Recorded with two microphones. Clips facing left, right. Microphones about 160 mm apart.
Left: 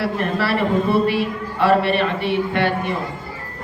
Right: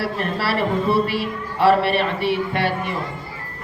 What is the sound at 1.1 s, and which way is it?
Speech, 55° left (ahead or behind).